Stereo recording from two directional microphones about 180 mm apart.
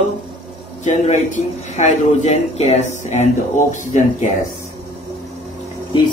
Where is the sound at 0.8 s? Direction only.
40° left (ahead or behind).